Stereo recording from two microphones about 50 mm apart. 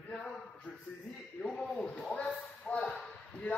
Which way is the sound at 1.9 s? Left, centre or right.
Left.